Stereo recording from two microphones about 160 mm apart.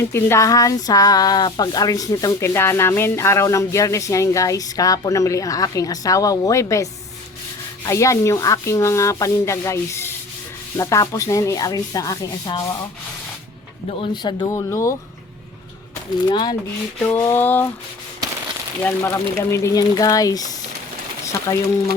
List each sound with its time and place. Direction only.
0.0 s speech: 15° left (ahead or behind)
7.9 s speech: 20° left (ahead or behind)
14.0 s speech: 30° left (ahead or behind)
16.2 s speech: 25° left (ahead or behind)
17.3 s speech: 15° left (ahead or behind)
18.8 s speech: 15° left (ahead or behind)
21.5 s speech: 25° left (ahead or behind)